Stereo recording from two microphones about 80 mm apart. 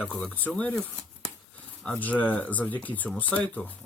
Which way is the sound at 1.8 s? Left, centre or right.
Centre.